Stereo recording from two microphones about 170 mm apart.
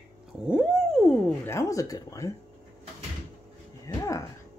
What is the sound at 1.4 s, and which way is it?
Speech, 15° left (ahead or behind).